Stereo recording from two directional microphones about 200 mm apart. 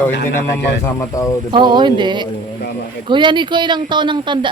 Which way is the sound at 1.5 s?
25° right (ahead or behind).